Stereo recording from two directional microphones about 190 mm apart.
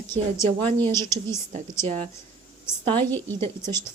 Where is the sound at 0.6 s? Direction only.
25° right (ahead or behind).